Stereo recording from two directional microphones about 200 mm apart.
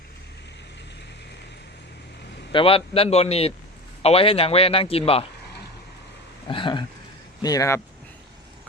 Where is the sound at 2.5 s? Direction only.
25° left (ahead or behind).